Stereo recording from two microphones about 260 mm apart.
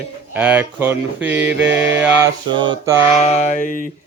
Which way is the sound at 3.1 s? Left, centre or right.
Left.